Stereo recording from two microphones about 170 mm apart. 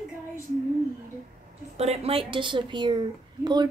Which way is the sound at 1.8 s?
35° right (ahead or behind).